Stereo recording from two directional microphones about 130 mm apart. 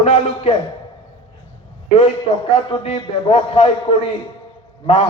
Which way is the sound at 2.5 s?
45° left (ahead or behind).